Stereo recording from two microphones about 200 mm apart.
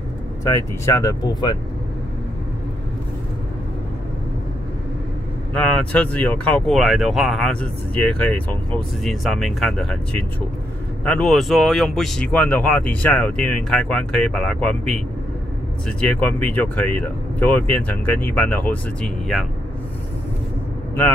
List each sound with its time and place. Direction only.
0.4 s speech: 15° left (ahead or behind)
5.5 s speech: 5° left (ahead or behind)
16.0 s speech: 5° left (ahead or behind)